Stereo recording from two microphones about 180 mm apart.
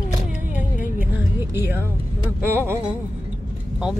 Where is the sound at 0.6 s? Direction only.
45° left (ahead or behind).